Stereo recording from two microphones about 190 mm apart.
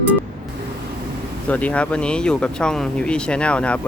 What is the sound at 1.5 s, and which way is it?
Speech, 5° left (ahead or behind).